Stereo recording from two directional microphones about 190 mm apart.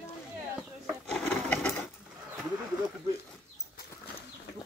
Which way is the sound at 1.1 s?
5° left (ahead or behind).